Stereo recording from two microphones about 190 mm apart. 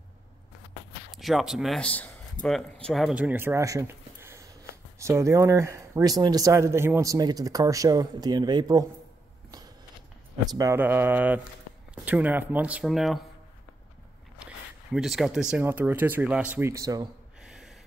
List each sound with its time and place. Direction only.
1.1 s a man's voice: centre (ahead or behind); by 8.8 s 20° right (ahead or behind)
10.5 s speech: 15° right (ahead or behind); by 13.2 s centre (ahead or behind)
15.0 s speech: centre (ahead or behind); by 17.1 s 20° right (ahead or behind)
17.4 s a sound: 5° right (ahead or behind)